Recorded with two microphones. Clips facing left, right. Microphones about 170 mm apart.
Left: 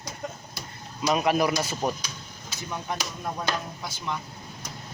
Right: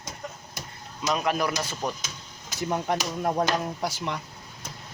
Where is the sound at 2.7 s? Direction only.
55° right (ahead or behind).